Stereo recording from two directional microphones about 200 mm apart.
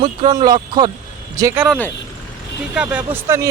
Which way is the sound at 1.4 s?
15° right (ahead or behind).